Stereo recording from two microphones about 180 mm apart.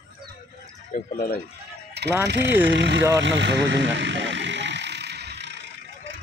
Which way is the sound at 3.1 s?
85° right.